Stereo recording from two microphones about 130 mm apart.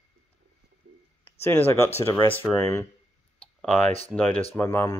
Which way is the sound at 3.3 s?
10° left (ahead or behind).